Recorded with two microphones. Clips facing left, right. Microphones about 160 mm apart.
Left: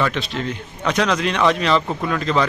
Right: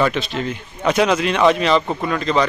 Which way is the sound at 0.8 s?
10° right (ahead or behind).